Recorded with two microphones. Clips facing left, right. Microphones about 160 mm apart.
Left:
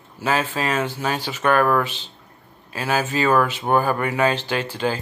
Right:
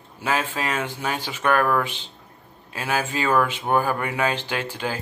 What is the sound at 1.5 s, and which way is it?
Speech, 15° left (ahead or behind).